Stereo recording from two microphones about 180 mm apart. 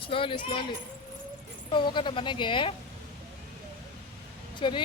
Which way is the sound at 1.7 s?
25° left (ahead or behind).